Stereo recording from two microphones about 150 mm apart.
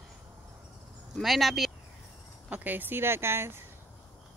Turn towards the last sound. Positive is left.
turn(degrees=-15)  # may be behind; listen again after turning